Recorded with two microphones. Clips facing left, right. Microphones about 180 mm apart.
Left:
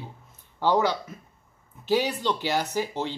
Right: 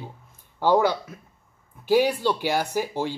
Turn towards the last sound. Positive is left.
turn(degrees=-10)  # may be behind; listen again after turning